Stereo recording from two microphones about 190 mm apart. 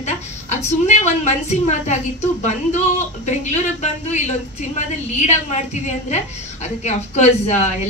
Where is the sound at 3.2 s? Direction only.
35° left (ahead or behind).